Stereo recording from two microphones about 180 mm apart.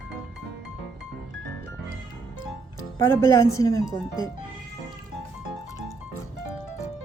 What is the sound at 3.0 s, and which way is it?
Speech, 15° left (ahead or behind).